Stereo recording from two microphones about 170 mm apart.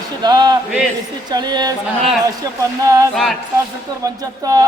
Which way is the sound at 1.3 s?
25° right (ahead or behind).